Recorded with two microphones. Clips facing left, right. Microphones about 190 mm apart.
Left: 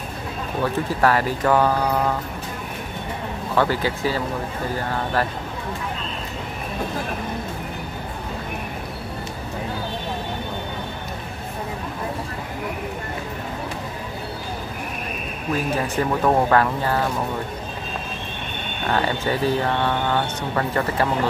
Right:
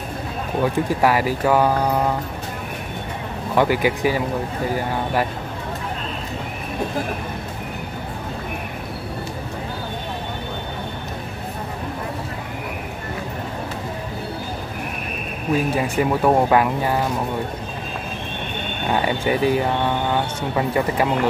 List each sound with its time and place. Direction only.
0.6 s speech: 15° right (ahead or behind)
3.5 s speech: 15° right (ahead or behind)
15.5 s speech: 15° right (ahead or behind)
18.9 s speech: 15° right (ahead or behind)